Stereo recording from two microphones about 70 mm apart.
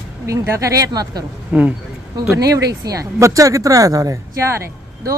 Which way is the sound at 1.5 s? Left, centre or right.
Right.